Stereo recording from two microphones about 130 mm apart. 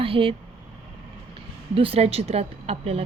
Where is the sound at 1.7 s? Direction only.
45° right (ahead or behind).